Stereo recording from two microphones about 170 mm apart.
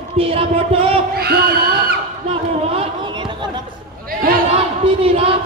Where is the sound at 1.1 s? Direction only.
65° right (ahead or behind).